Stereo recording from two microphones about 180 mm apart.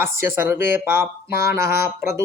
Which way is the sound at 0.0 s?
10° right (ahead or behind).